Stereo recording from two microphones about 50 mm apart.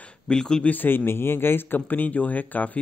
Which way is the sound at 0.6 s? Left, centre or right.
Left.